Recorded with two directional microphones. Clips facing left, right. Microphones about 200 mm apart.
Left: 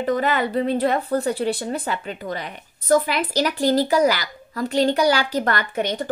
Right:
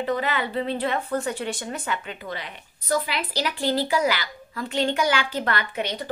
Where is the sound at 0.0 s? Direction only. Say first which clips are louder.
Left 4 dB; 45° left (ahead or behind).